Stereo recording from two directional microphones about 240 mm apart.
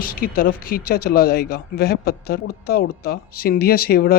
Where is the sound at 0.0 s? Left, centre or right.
Left.